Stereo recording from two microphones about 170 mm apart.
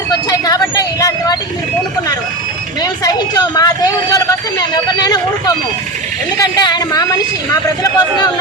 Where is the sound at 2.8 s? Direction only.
20° left (ahead or behind).